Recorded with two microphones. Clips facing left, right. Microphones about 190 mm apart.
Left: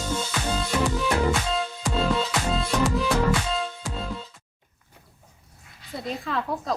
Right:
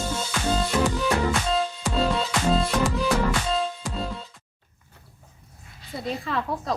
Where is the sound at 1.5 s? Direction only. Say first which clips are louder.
Right 2 dB; centre (ahead or behind).